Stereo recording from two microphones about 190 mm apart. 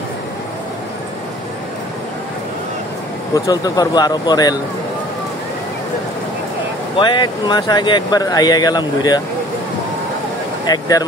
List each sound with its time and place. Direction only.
3.3 s speech: 20° left (ahead or behind)
7.0 s speech: 25° left (ahead or behind)
10.7 s speech: 20° left (ahead or behind)